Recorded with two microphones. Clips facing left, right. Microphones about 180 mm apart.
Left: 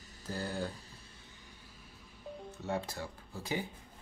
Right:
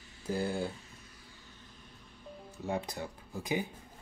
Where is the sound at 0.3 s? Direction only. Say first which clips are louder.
Right 5 dB; 15° right (ahead or behind).